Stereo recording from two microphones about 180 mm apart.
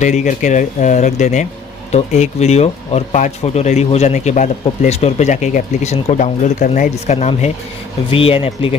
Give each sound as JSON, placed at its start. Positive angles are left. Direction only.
{"t": 0.0, "sound": "speech", "side_deg": 45}